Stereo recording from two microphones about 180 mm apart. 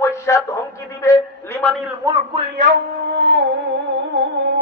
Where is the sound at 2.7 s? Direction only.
75° right (ahead or behind).